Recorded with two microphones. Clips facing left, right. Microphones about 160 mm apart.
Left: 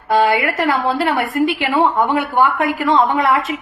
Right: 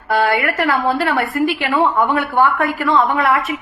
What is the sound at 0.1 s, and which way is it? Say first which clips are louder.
A woman's voice: left 2 dB; 20° left (ahead or behind).